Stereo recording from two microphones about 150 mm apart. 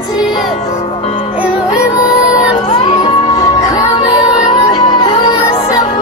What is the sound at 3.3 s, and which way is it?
Music, 25° left (ahead or behind).